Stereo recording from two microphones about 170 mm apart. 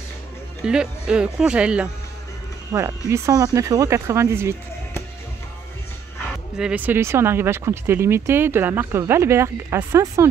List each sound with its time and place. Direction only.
0.7 s speech: 5° right (ahead or behind)
2.7 s speech: 20° right (ahead or behind)
6.5 s speech: 5° right (ahead or behind)